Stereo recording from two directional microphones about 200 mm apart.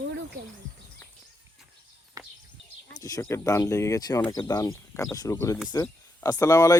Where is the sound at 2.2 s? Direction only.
20° right (ahead or behind).